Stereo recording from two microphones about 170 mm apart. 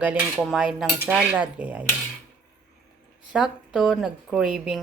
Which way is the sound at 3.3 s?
5° right (ahead or behind).